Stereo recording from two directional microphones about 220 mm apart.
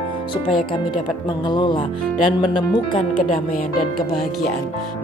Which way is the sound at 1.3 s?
20° left (ahead or behind).